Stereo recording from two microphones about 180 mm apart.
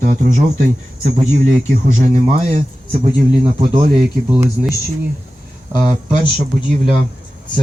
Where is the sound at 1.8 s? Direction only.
45° right (ahead or behind).